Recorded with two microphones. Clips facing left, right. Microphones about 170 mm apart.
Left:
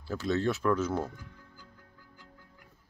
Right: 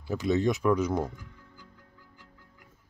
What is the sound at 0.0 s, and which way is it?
Speech, 15° right (ahead or behind).